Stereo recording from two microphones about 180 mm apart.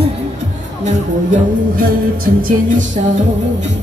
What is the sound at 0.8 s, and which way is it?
Music, 45° right (ahead or behind).